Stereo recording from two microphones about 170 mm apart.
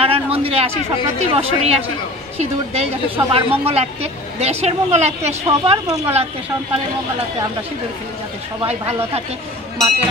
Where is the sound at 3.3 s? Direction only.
35° right (ahead or behind).